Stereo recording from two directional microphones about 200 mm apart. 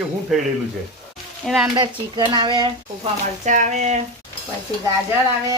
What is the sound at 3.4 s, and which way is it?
Speech, 35° right (ahead or behind).